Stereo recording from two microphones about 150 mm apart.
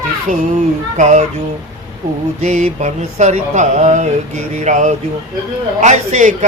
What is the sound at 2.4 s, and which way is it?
Speech, 55° right (ahead or behind).